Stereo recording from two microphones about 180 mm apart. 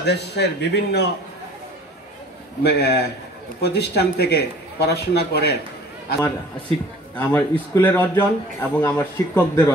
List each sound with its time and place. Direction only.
0.0 s a man's voice: 70° left (ahead or behind)
2.6 s a man's voice: 65° left (ahead or behind)
7.2 s a man's voice: 10° left (ahead or behind)